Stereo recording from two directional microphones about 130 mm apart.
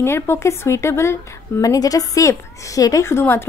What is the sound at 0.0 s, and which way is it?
A woman's voice, 20° left (ahead or behind).